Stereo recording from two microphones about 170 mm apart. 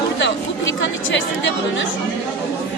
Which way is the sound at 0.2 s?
90° left.